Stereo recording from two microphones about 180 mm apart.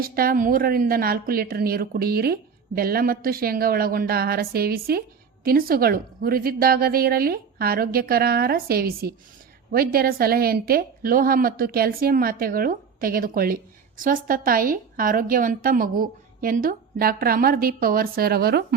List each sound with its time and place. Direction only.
0.0 s a woman's voice: 55° right (ahead or behind)